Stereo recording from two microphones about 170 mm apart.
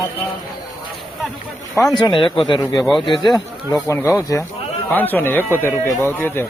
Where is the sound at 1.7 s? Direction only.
20° left (ahead or behind).